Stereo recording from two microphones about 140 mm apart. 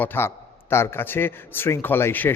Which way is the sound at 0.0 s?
15° left (ahead or behind).